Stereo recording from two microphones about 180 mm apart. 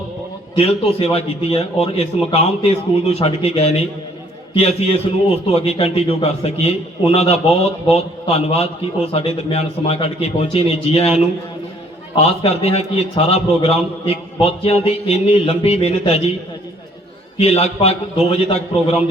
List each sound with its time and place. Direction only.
0.5 s a man's voice: 35° left (ahead or behind)
12.1 s a man's voice: 35° left (ahead or behind)
17.3 s a man's voice: 35° left (ahead or behind)